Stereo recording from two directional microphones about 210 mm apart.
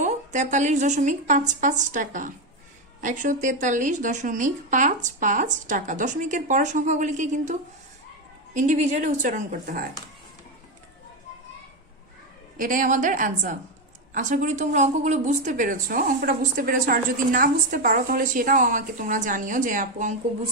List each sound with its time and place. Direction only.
0.0 s speech: 35° right (ahead or behind)
8.5 s speech: 35° right (ahead or behind)
12.5 s speech: 40° right (ahead or behind)